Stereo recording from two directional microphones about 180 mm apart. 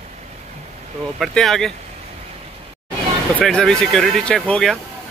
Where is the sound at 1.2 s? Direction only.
Centre (ahead or behind).